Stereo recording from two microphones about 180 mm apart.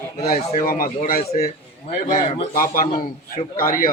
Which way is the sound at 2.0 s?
40° left (ahead or behind).